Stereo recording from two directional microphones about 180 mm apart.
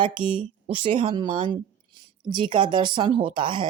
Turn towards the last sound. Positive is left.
turn(degrees=-25)  # may be behind; listen again after turning